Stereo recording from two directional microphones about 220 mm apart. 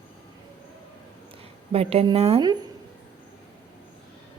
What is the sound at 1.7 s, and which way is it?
Speech, 25° right (ahead or behind).